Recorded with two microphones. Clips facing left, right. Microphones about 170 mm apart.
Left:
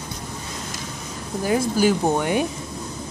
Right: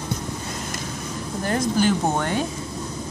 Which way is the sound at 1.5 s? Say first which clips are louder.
Left 2 dB; 5° left (ahead or behind).